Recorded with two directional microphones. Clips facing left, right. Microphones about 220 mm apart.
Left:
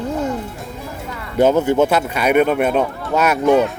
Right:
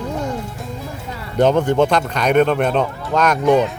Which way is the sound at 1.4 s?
5° left (ahead or behind).